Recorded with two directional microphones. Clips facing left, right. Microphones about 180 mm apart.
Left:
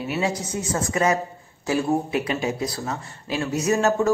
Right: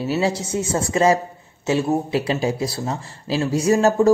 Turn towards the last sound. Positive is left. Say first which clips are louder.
# right 5 dB
turn(degrees=-30)  # may be behind; listen again after turning